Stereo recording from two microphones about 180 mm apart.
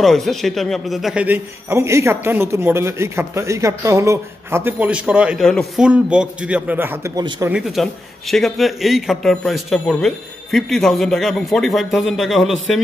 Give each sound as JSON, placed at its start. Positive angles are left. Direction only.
{"t": 0.0, "sound": "a man's voice", "side_deg": 0}
{"t": 7.5, "sound": "a man's voice", "side_deg": 0}